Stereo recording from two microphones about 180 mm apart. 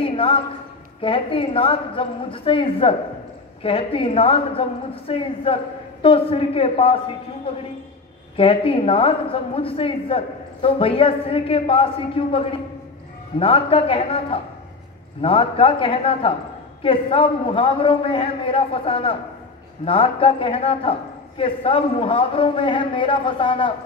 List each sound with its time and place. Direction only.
0.0 s a sound: 30° left (ahead or behind)
1.0 s a woman's voice: 30° left (ahead or behind)
8.4 s a woman's voice: 30° left (ahead or behind)